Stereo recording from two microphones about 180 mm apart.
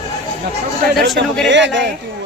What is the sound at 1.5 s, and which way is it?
Speech, 85° right.